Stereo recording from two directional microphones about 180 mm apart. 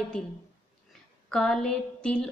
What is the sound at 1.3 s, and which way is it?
Speech, 5° left (ahead or behind).